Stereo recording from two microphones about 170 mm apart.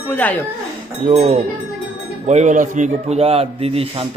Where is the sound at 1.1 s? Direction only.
40° right (ahead or behind).